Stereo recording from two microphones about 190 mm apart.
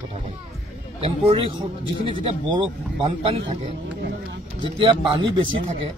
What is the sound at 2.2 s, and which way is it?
A man's voice, 30° right (ahead or behind).